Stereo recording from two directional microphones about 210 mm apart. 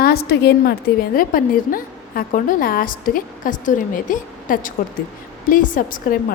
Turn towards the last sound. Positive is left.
turn(degrees=40)  # may be behind; listen again after turning